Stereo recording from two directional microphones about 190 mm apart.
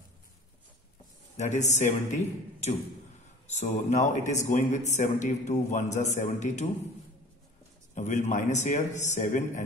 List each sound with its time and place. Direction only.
1.3 s a man's voice: 35° left (ahead or behind)
7.9 s a man's voice: 40° left (ahead or behind)